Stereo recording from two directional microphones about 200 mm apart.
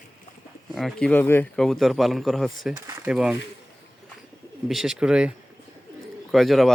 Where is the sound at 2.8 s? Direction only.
5° right (ahead or behind).